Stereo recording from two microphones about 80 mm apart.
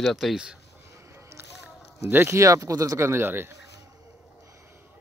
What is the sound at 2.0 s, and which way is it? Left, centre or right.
Speech, right.